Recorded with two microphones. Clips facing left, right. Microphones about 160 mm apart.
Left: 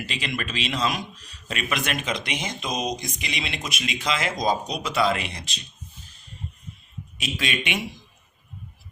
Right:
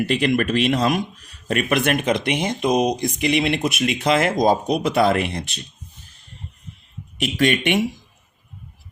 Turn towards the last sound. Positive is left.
turn(degrees=-50)  # may be behind; listen again after turning